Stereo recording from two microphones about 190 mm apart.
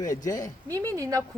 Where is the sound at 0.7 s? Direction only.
15° right (ahead or behind).